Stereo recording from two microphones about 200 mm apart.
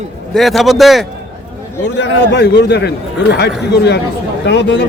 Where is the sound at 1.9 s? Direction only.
60° left (ahead or behind).